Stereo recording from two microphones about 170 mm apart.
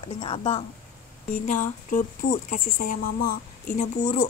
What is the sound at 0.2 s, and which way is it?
Speech, 30° left (ahead or behind).